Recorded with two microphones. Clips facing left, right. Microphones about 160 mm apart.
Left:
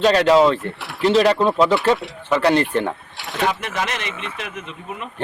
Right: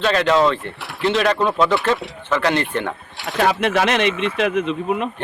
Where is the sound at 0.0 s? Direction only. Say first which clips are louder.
Left 3 dB; 35° left (ahead or behind).